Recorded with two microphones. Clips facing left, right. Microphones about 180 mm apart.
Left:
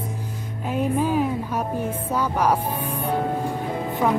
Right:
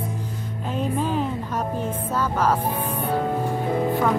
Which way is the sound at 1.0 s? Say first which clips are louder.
Left 3 dB; 10° left (ahead or behind).